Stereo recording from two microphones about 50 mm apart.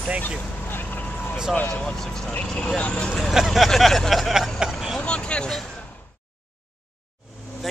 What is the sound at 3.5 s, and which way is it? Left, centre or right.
Speech, centre.